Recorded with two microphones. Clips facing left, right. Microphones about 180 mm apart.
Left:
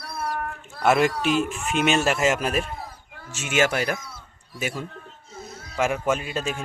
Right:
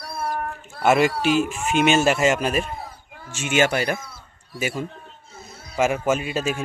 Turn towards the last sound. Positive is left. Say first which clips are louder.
# right 3 dB
turn(degrees=-5)  # may be behind; listen again after turning